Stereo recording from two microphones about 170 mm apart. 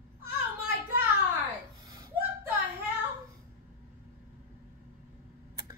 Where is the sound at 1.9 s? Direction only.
20° right (ahead or behind).